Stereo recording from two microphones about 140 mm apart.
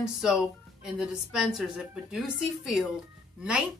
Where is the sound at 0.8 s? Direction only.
5° right (ahead or behind).